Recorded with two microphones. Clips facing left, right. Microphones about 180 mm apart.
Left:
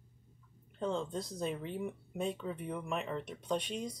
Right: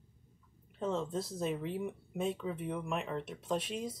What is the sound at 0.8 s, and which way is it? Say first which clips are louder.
Speech: right 1 dB; 5° right (ahead or behind).